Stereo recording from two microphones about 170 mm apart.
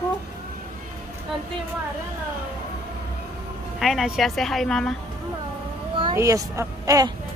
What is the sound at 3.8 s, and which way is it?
A woman's voice, centre (ahead or behind).